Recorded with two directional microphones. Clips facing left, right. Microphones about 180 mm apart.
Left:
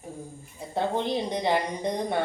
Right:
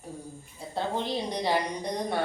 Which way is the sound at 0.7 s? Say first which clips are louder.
Left 3 dB; 20° left (ahead or behind).